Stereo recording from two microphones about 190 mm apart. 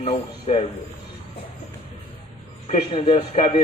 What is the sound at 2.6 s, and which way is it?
Speech, 35° left (ahead or behind).